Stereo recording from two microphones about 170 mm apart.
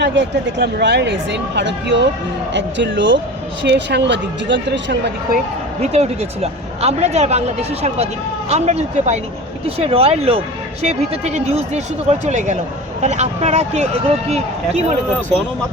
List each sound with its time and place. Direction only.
0.0 s speech: 90° right
5.8 s speech: 40° right (ahead or behind)